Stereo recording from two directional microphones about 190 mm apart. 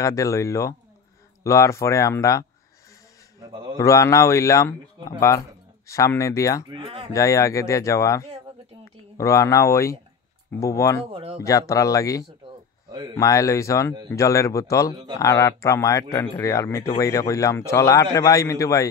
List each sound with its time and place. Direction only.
0.0 s a man's voice: 15° left (ahead or behind)
3.4 s a sound: 25° right (ahead or behind)
3.7 s a man's voice: 15° left (ahead or behind)
6.7 s speech: 30° right (ahead or behind)
7.1 s a man's voice: 15° left (ahead or behind)
11.1 s speech: 30° right (ahead or behind)
11.4 s a man's voice: 15° left (ahead or behind)